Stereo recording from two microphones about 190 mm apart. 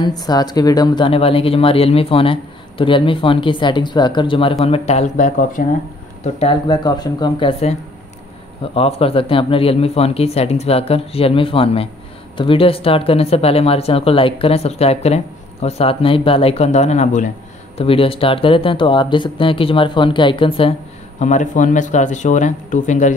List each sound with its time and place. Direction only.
0.0 s speech: 20° left (ahead or behind); by 5.6 s 40° left (ahead or behind)
6.4 s speech: 20° left (ahead or behind)
8.7 s speech: 30° left (ahead or behind)
21.2 s speech: 40° left (ahead or behind)